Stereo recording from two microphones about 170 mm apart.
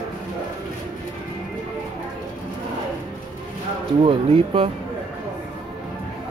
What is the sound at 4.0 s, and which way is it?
Speech, 35° right (ahead or behind).